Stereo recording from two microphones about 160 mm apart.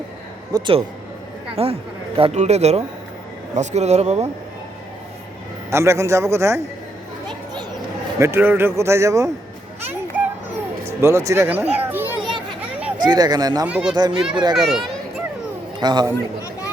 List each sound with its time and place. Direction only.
0.5 s a man's voice: 30° right (ahead or behind)
5.7 s a man's voice: 20° right (ahead or behind)
8.2 s a man's voice: 15° right (ahead or behind)
10.8 s speech: 15° right (ahead or behind)
12.2 s children playing: 30° right (ahead or behind)
13.0 s speech: 25° right (ahead or behind)
13.7 s a man's voice: 10° right (ahead or behind)
15.8 s speech: 25° right (ahead or behind)